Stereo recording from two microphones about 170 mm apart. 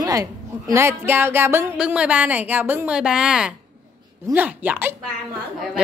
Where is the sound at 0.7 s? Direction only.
15° right (ahead or behind).